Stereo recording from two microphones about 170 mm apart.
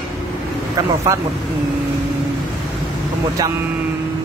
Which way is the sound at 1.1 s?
20° right (ahead or behind).